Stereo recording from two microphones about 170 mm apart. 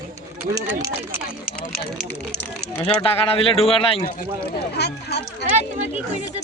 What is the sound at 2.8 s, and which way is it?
Speech, 35° left (ahead or behind).